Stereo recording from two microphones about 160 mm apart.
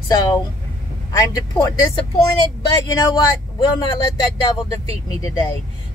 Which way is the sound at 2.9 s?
25° left (ahead or behind).